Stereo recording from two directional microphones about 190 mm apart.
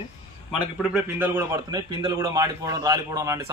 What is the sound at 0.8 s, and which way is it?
Speech, 5° right (ahead or behind).